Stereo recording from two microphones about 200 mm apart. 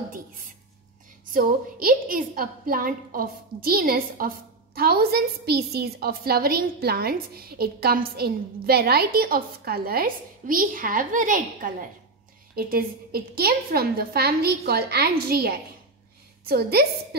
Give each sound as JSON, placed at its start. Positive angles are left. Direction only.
{"t": 1.3, "sound": "a woman's voice", "side_deg": -45}